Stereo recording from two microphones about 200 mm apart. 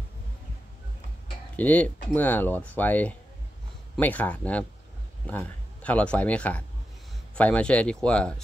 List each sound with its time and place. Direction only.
1.6 s speech: 5° left (ahead or behind)